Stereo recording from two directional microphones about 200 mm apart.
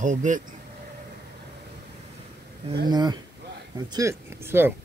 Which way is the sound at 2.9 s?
20° right (ahead or behind).